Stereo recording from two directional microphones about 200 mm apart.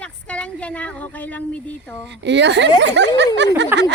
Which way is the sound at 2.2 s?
60° right (ahead or behind).